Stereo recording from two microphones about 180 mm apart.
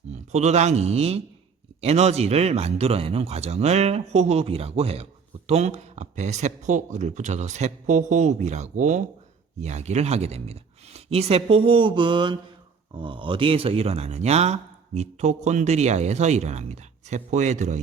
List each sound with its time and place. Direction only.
0.1 s a man's voice: 40° right (ahead or behind)